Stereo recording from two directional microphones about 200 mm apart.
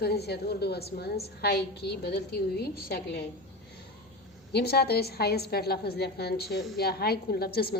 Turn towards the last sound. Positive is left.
turn(degrees=50)  # may be behind; listen again after turning